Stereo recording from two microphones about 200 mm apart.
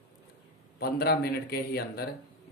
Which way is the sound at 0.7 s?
50° left (ahead or behind).